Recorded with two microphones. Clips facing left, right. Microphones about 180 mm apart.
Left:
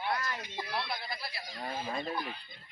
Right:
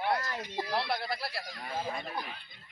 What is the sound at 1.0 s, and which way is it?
Speech, 75° right (ahead or behind).